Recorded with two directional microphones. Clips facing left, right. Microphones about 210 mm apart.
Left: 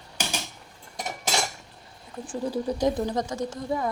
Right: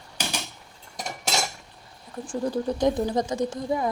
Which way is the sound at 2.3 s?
5° left (ahead or behind).